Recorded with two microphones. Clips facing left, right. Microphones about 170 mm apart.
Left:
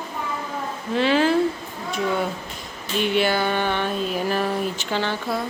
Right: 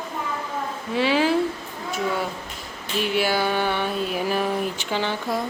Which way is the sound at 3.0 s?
5° right (ahead or behind).